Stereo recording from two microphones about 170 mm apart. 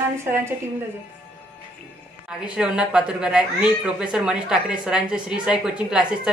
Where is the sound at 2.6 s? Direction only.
5° right (ahead or behind).